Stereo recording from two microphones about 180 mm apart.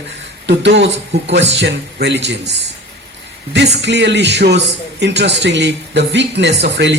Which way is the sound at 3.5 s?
75° right (ahead or behind).